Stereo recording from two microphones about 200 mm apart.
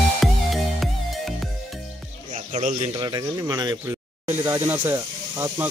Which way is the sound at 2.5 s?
35° right (ahead or behind).